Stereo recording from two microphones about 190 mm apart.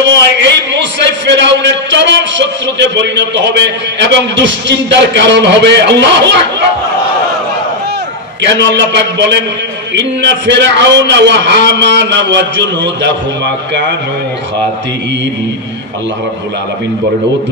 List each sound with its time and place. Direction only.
0.0 s a man's voice: 70° right (ahead or behind)
8.4 s a man's voice: 70° right (ahead or behind)